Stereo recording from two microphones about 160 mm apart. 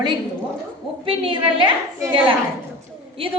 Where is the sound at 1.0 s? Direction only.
35° right (ahead or behind).